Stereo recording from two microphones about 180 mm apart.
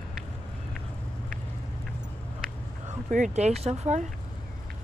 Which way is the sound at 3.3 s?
35° right (ahead or behind).